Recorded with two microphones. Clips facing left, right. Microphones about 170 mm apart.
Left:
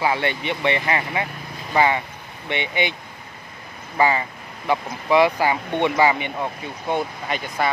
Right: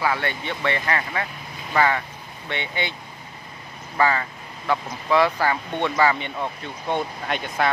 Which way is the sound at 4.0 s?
15° left (ahead or behind).